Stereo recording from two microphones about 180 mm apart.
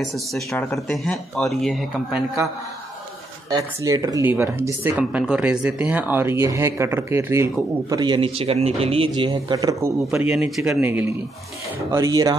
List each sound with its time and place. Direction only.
0.1 s speech: centre (ahead or behind)
3.4 s speech: 20° right (ahead or behind)
7.9 s speech: 25° right (ahead or behind)
10.3 s speech: 5° right (ahead or behind)
11.9 s speech: 20° right (ahead or behind)